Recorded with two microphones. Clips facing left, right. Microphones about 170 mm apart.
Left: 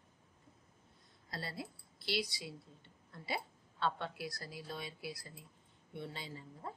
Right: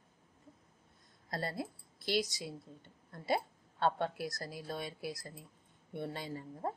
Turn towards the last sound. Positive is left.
turn(degrees=-50)  # may be behind; listen again after turning